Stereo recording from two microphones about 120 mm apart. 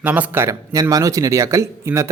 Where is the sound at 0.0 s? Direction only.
15° right (ahead or behind).